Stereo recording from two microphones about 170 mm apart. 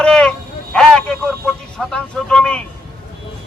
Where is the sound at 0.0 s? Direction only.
5° left (ahead or behind).